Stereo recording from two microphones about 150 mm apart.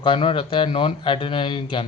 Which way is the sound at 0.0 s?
35° left (ahead or behind).